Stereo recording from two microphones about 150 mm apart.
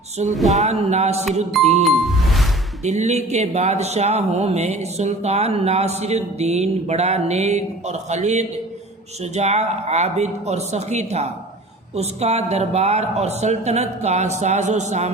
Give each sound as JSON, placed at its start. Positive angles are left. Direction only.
{"t": 0.5, "sound": "a man's voice", "side_deg": -50}
{"t": 2.8, "sound": "a man's voice", "side_deg": -50}